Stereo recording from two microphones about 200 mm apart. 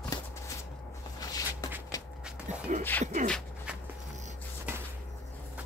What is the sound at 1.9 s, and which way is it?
Walk, 20° left (ahead or behind).